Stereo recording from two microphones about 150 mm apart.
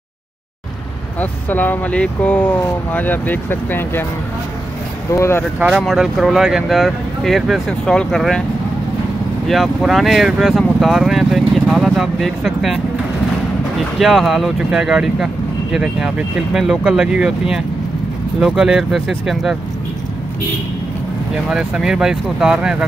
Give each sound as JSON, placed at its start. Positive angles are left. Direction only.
{"t": 1.2, "sound": "speech", "side_deg": 10}
{"t": 5.1, "sound": "speech", "side_deg": 20}
{"t": 5.7, "sound": "speech", "side_deg": 0}
{"t": 9.5, "sound": "speech", "side_deg": 0}
{"t": 21.5, "sound": "speech", "side_deg": -5}